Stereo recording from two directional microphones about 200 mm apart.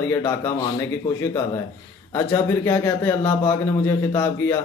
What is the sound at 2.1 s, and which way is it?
A man's voice, 15° left (ahead or behind).